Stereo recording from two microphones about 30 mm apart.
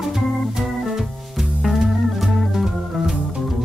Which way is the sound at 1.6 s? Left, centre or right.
Centre.